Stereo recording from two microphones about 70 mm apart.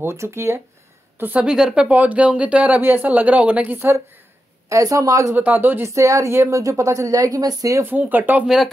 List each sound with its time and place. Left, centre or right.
0.0 s speech: right
1.4 s speech: centre
1.8 s speech: right
2.8 s speech: right
3.7 s speech: right
4.6 s speech: right
5.3 s speech: right
5.9 s speech: right
7.8 s speech: right